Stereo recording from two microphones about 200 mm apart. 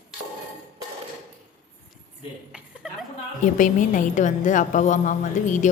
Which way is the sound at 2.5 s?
Centre (ahead or behind).